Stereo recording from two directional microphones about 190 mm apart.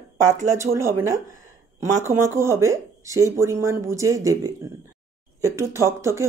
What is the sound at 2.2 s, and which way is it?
Speech, 15° right (ahead or behind).